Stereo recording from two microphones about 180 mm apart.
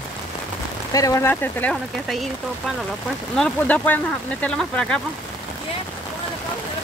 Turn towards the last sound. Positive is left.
turn(degrees=5)  # may be behind; listen again after turning